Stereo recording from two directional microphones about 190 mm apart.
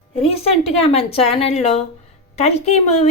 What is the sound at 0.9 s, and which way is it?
A woman's voice, 30° left (ahead or behind).